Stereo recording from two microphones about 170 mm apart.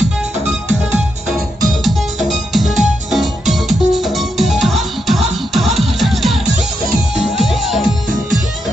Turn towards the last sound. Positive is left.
turn(degrees=0)  # may be behind; listen again after turning